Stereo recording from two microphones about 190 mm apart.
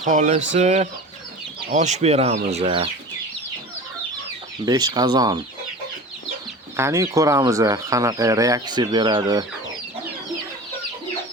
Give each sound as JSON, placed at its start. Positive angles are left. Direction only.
{"t": 0.0, "sound": "speech", "side_deg": -40}
{"t": 4.6, "sound": "speech", "side_deg": -20}
{"t": 6.7, "sound": "speech", "side_deg": -15}